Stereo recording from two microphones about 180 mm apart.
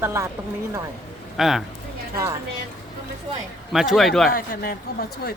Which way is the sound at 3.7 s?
Centre (ahead or behind).